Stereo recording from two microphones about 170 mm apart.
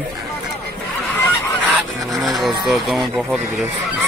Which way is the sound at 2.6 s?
Centre (ahead or behind).